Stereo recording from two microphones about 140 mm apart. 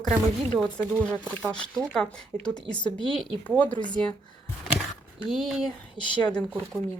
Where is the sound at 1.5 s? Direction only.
5° left (ahead or behind).